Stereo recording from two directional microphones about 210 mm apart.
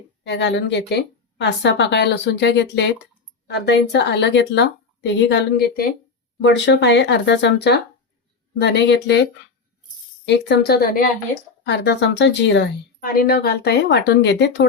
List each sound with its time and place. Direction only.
0.3 s a woman's voice: 60° left (ahead or behind)
10.2 s speech: 55° left (ahead or behind)